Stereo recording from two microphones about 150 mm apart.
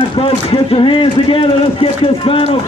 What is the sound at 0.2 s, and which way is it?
A man's voice, 40° left (ahead or behind).